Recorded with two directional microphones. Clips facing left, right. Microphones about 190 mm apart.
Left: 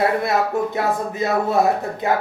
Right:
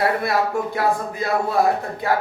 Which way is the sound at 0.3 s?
20° left (ahead or behind).